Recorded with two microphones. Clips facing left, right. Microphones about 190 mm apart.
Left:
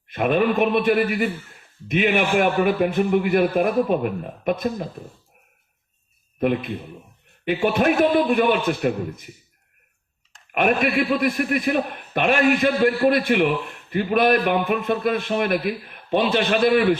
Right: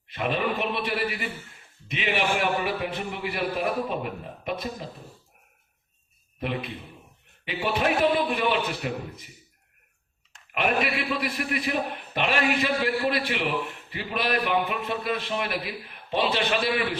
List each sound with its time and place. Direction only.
0.1 s a man's voice: 50° left (ahead or behind)
7.4 s a man's voice: 45° left (ahead or behind)
10.5 s a man's voice: 50° left (ahead or behind)